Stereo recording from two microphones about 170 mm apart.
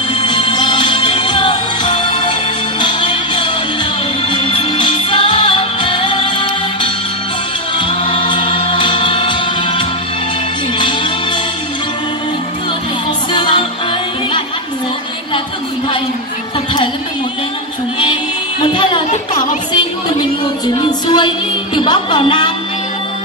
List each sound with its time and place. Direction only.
0.1 s music: 30° left (ahead or behind)
13.3 s music: 30° left (ahead or behind)
18.6 s music: 30° left (ahead or behind)
20.6 s music: 25° left (ahead or behind)